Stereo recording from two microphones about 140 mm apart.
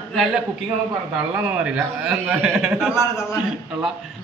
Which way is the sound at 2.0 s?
5° right (ahead or behind).